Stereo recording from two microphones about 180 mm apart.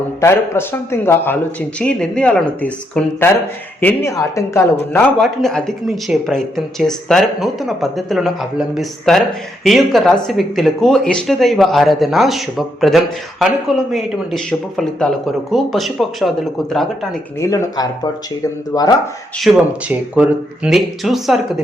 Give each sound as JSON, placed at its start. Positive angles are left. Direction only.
{"t": 0.2, "sound": "speech", "side_deg": 15}
{"t": 5.1, "sound": "speech", "side_deg": 0}
{"t": 17.4, "sound": "speech", "side_deg": 20}
{"t": 19.5, "sound": "speech", "side_deg": -5}